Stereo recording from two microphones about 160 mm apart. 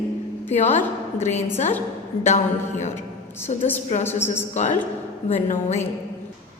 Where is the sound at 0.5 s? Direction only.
45° left (ahead or behind).